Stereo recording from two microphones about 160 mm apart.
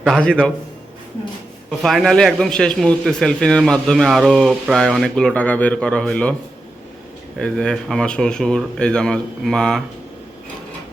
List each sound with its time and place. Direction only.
0.0 s a man's voice: 5° left (ahead or behind)
1.8 s a man's voice: centre (ahead or behind)
7.3 s a man's voice: 5° left (ahead or behind)